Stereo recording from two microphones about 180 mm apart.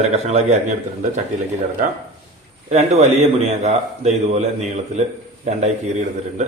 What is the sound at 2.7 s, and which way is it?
A man's voice, 40° right (ahead or behind).